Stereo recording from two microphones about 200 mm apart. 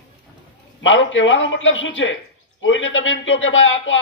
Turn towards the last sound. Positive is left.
turn(degrees=70)  # may be behind; listen again after turning